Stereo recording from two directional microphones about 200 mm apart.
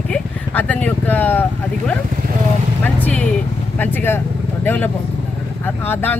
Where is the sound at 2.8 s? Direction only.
5° left (ahead or behind).